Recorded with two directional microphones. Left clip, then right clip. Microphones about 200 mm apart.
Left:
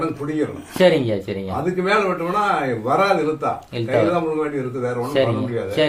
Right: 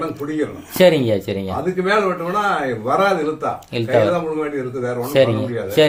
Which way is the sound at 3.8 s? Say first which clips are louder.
Right 3 dB; 35° right (ahead or behind).